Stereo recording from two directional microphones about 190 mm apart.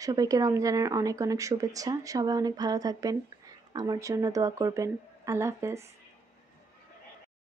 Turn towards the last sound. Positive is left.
turn(degrees=-15)  # may be behind; listen again after turning